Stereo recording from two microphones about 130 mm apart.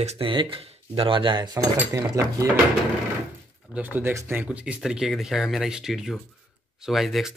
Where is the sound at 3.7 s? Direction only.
15° right (ahead or behind).